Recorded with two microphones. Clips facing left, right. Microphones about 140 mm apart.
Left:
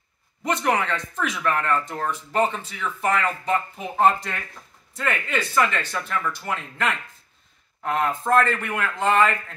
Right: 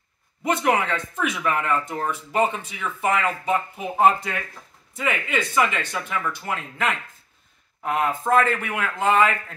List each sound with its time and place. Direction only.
0.4 s a man's voice: 10° right (ahead or behind)